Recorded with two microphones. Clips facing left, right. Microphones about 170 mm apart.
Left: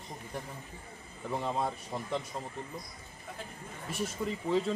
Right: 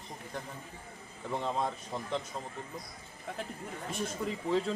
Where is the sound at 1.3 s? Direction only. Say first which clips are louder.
Even; 5° left (ahead or behind).